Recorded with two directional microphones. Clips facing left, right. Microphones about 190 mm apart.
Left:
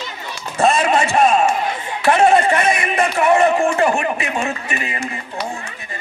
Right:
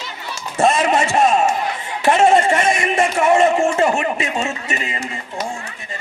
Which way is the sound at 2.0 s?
20° right (ahead or behind).